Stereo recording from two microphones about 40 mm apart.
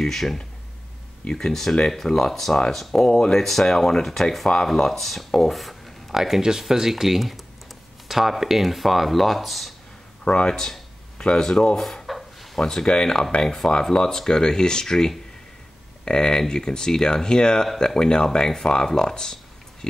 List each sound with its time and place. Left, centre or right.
0.0 s speech: centre
3.1 s speech: centre
3.3 s speech: centre
10.2 s speech: left
11.8 s a sound: centre
12.5 s speech: centre
12.8 s speech: left
13.9 s speech: centre